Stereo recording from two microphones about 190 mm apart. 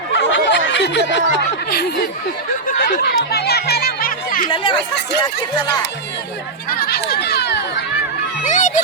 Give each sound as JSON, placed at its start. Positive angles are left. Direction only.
{"t": 0.1, "sound": "snicker", "side_deg": 75}
{"t": 2.6, "sound": "music", "side_deg": 50}
{"t": 4.4, "sound": "speech", "side_deg": 25}
{"t": 6.7, "sound": "speech", "side_deg": 55}
{"t": 8.4, "sound": "speech", "side_deg": 40}